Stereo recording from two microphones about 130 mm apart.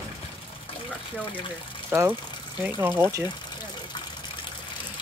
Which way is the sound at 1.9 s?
20° right (ahead or behind).